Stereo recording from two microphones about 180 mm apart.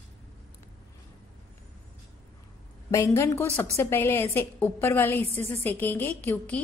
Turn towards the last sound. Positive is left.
turn(degrees=10)  # may be behind; listen again after turning